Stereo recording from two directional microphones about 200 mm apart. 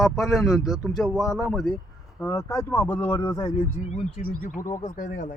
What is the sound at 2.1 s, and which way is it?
Speech, 15° left (ahead or behind).